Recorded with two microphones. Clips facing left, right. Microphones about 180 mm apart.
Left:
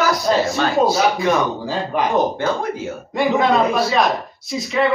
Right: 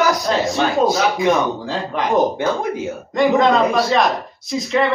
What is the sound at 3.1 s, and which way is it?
Speech, 5° left (ahead or behind).